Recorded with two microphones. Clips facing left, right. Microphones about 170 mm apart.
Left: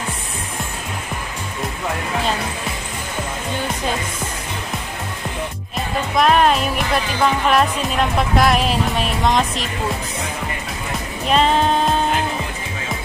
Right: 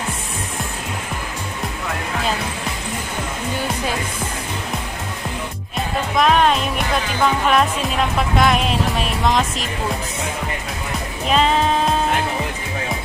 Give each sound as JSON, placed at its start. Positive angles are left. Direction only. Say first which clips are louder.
{"t": 5.8, "sound": "music", "louder": "even", "side_deg": 0}
{"t": 11.2, "sound": "music", "louder": "left 1 dB", "side_deg": 0}